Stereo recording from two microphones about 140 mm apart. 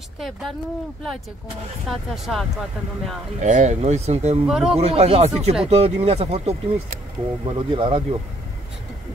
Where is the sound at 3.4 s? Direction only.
60° right (ahead or behind).